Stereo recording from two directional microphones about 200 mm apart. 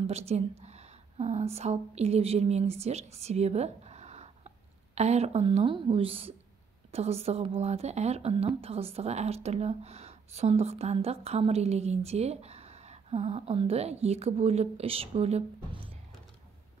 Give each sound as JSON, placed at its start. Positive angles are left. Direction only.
{"t": 0.3, "sound": "a woman's voice", "side_deg": -35}